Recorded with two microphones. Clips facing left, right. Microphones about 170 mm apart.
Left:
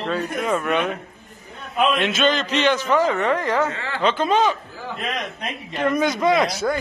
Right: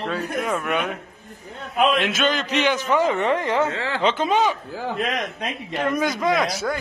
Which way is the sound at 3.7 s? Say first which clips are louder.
Right 3 dB; 90° right.